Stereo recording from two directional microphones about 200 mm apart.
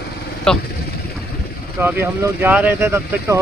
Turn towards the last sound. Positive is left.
turn(degrees=-10)  # may be behind; listen again after turning